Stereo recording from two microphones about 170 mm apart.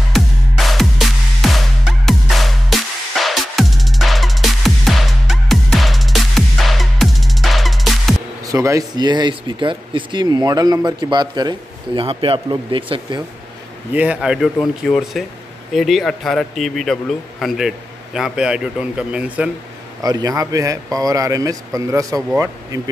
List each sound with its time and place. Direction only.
0.1 s music: centre (ahead or behind)
8.5 s speech: 20° right (ahead or behind)
13.9 s a man's voice: 5° right (ahead or behind)
20.0 s speech: 20° right (ahead or behind)